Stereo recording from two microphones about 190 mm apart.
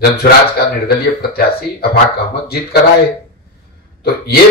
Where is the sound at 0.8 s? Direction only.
55° left (ahead or behind).